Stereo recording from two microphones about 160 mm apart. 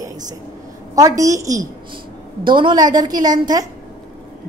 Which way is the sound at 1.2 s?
20° right (ahead or behind).